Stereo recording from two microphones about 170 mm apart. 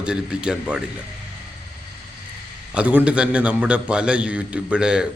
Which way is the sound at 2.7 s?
5° right (ahead or behind).